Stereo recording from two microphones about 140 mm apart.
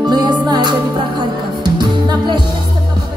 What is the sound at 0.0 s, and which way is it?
Music, 30° right (ahead or behind).